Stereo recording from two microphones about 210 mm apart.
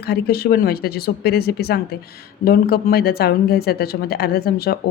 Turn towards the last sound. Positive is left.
turn(degrees=45)  # may be behind; listen again after turning